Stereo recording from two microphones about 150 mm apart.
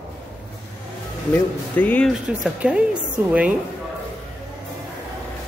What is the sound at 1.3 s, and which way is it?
Speech, 10° left (ahead or behind).